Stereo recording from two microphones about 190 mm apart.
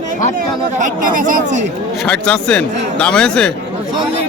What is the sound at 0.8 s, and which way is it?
Speech, 45° right (ahead or behind).